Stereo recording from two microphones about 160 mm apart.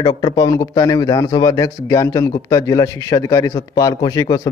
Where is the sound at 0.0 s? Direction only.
30° left (ahead or behind).